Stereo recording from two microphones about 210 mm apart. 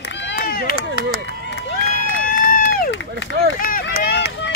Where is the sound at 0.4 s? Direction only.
45° left (ahead or behind).